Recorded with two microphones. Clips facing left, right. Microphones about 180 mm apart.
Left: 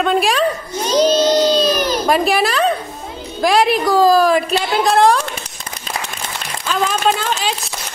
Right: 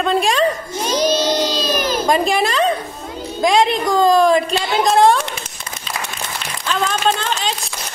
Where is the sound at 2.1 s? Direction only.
5° left (ahead or behind).